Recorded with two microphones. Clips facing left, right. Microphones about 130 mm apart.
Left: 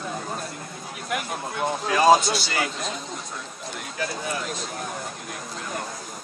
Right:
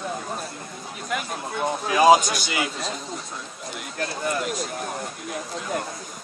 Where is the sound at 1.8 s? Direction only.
10° right (ahead or behind).